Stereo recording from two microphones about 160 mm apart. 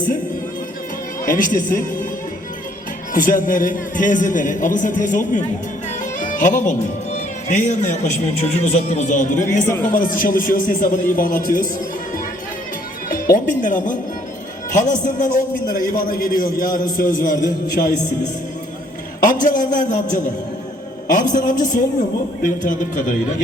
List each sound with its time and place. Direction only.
1.2 s speech: 60° left (ahead or behind)
3.1 s a man's voice: 60° left (ahead or behind)
6.1 s music: 50° left (ahead or behind)
7.5 s a man's voice: 50° left (ahead or behind)
13.1 s speech: 60° left (ahead or behind)
15.7 s a man's voice: 65° left (ahead or behind)